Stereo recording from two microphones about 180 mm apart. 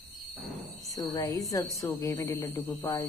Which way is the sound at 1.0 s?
20° left (ahead or behind).